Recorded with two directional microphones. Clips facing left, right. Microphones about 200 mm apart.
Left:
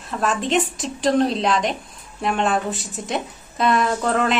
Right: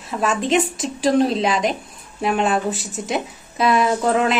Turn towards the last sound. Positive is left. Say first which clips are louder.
# right 2 dB
turn(degrees=-5)  # may be behind; listen again after turning